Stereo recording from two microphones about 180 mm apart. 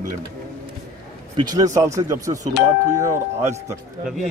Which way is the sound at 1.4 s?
20° right (ahead or behind).